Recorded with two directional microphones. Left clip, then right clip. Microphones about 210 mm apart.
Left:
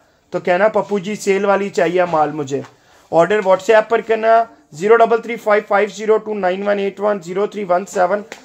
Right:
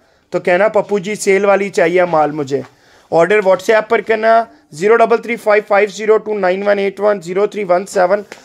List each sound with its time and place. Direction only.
0.3 s speech: 40° right (ahead or behind)